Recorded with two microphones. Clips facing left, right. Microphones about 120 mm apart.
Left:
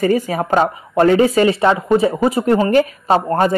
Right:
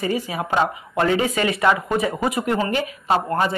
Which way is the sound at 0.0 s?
45° left (ahead or behind).